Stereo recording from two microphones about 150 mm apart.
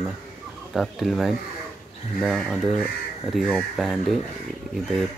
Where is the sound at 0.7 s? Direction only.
Centre (ahead or behind).